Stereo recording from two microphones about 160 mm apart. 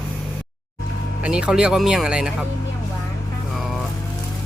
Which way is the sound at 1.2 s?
5° right (ahead or behind).